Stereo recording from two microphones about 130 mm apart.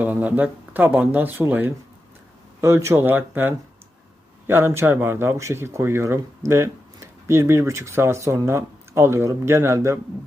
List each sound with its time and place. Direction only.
0.0 s speech: 10° right (ahead or behind)